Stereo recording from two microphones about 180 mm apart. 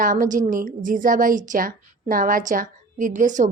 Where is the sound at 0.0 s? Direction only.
50° right (ahead or behind).